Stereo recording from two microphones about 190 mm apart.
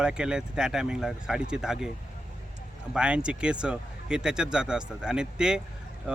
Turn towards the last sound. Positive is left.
turn(degrees=-5)  # may be behind; listen again after turning